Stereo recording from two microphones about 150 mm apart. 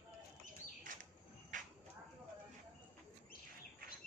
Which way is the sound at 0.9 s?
60° right (ahead or behind).